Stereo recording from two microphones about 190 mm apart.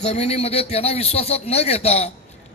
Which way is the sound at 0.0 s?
35° left (ahead or behind).